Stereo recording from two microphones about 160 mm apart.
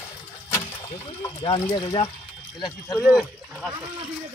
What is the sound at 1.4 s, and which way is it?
Speech, 35° left (ahead or behind).